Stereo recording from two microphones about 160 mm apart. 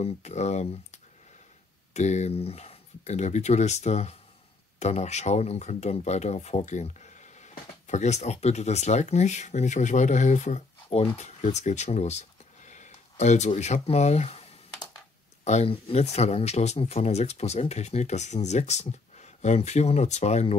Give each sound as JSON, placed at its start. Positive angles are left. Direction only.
{"t": 0.0, "sound": "speech", "side_deg": 45}
{"t": 11.1, "sound": "a sound", "side_deg": 45}
{"t": 13.6, "sound": "speech", "side_deg": 40}
{"t": 15.4, "sound": "speech", "side_deg": 40}